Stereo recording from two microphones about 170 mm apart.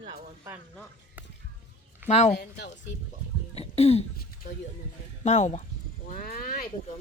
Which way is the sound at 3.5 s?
35° left (ahead or behind).